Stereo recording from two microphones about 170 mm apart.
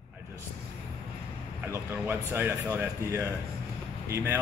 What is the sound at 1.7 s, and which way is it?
Speech, 15° right (ahead or behind).